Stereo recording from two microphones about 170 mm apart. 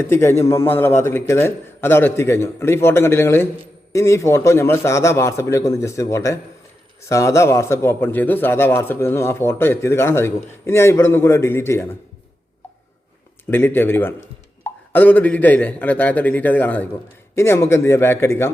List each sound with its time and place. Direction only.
0.0 s speech: 15° left (ahead or behind)
13.5 s speech: 10° left (ahead or behind)